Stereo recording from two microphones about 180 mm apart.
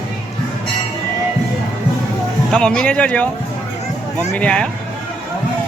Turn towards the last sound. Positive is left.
turn(degrees=5)  # may be behind; listen again after turning